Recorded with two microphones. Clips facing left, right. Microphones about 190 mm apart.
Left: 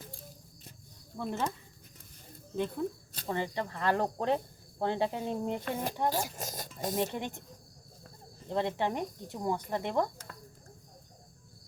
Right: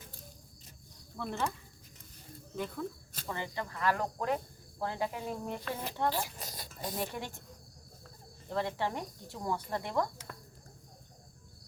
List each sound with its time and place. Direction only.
1.1 s speech: 15° left (ahead or behind)
2.6 s speech: 30° left (ahead or behind)
6.1 s speech: 45° left (ahead or behind)
6.9 s speech: 20° left (ahead or behind)
8.4 s speech: 20° left (ahead or behind)